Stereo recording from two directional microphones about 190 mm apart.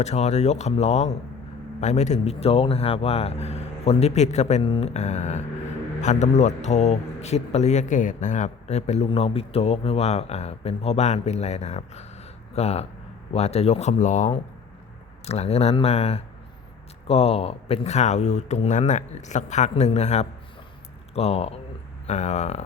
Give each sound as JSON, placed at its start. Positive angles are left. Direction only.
{"t": 0.0, "sound": "speech", "side_deg": 35}